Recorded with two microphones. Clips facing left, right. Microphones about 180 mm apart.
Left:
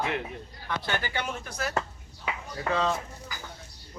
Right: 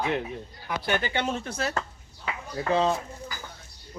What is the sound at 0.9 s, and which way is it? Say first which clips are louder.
Speech: right 6 dB; 20° right (ahead or behind).